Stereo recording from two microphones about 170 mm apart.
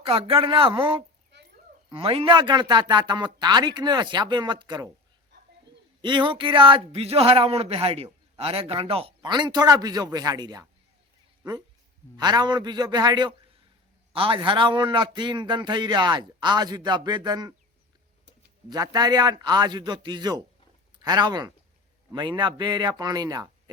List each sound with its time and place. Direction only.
0.0 s a man's voice: 30° right (ahead or behind)
5.3 s a sound: 90° right
6.0 s a man's voice: 25° right (ahead or behind)
12.1 s a man's voice: 25° right (ahead or behind)
18.7 s a man's voice: 25° right (ahead or behind)